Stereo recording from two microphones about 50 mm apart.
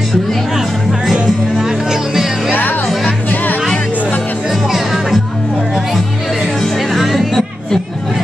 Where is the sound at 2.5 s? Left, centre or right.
Left.